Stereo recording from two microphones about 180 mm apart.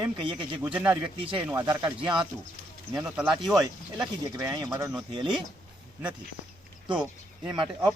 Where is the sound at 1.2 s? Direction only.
30° right (ahead or behind).